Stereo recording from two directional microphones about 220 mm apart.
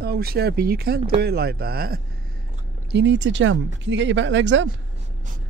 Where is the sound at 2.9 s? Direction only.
55° right (ahead or behind).